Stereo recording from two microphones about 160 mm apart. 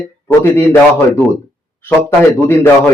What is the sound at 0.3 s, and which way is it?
Speech, 15° left (ahead or behind).